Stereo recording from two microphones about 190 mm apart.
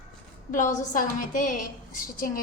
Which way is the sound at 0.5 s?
40° left (ahead or behind).